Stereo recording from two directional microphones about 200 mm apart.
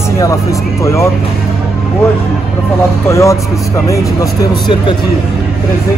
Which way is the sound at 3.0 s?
15° left (ahead or behind).